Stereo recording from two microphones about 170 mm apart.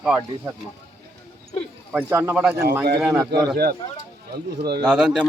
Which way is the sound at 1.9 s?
10° right (ahead or behind).